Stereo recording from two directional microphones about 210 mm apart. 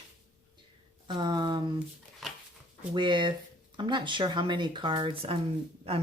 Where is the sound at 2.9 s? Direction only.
20° right (ahead or behind).